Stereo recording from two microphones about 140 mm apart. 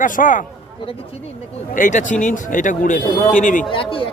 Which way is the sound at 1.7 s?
65° left (ahead or behind).